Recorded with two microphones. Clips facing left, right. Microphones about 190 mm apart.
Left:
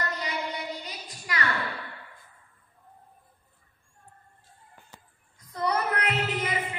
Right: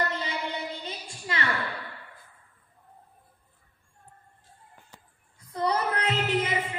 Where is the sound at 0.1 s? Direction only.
25° right (ahead or behind).